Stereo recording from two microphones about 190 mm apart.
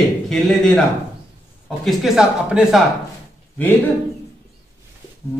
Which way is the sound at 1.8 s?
Centre (ahead or behind).